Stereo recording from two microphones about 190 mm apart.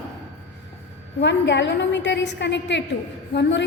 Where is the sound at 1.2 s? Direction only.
65° left (ahead or behind).